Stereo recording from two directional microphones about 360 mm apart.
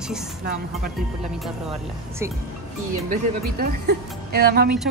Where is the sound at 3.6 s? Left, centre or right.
Right.